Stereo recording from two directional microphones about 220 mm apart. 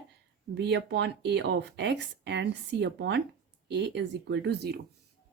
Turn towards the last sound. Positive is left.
turn(degrees=-50)  # may be behind; listen again after turning